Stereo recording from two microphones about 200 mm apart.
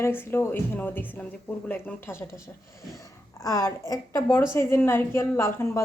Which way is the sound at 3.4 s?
15° left (ahead or behind).